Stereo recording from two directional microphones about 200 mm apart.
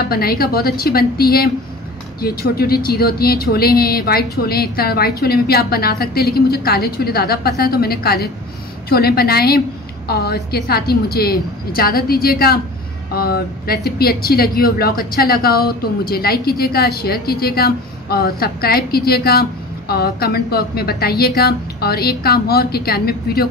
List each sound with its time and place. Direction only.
0.1 s speech: 50° left (ahead or behind)